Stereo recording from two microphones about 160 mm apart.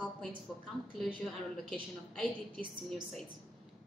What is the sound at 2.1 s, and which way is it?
Speech, 5° left (ahead or behind).